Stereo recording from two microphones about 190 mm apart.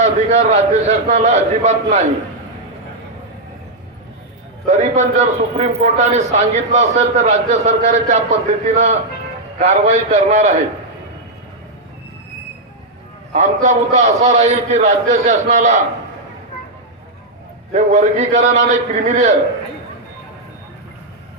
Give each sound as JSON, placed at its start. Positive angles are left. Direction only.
{"t": 0.0, "sound": "a man's voice", "side_deg": -40}
{"t": 4.8, "sound": "a man's voice", "side_deg": -40}
{"t": 13.3, "sound": "a man's voice", "side_deg": -40}
{"t": 17.7, "sound": "a man's voice", "side_deg": -40}